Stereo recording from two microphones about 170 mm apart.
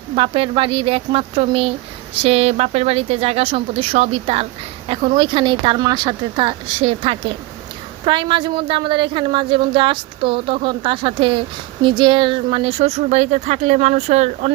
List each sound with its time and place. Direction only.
0.2 s a woman's voice: 30° right (ahead or behind)